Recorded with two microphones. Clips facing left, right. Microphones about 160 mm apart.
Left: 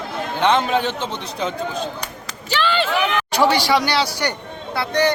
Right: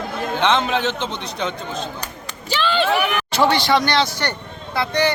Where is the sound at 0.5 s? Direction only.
5° left (ahead or behind).